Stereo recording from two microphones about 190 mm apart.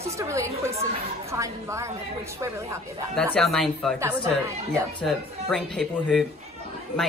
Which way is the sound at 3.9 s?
15° right (ahead or behind).